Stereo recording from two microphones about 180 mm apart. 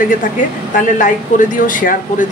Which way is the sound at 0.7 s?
45° left (ahead or behind).